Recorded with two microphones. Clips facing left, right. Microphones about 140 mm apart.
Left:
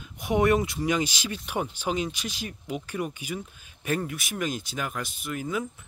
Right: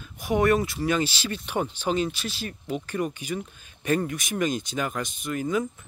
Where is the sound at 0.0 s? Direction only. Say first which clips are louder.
Right 1 dB; 20° left (ahead or behind).